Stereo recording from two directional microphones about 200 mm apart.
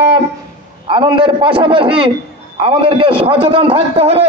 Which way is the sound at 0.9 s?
25° right (ahead or behind).